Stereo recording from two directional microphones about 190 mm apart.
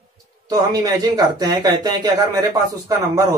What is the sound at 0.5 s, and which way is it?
Speech, 20° right (ahead or behind).